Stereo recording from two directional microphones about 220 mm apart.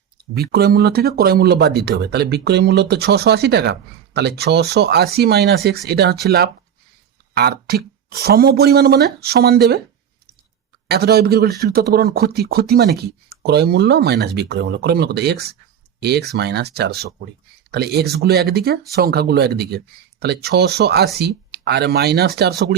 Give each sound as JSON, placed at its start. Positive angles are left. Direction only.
{"t": 0.2, "sound": "speech", "side_deg": -45}
{"t": 10.8, "sound": "speech", "side_deg": -45}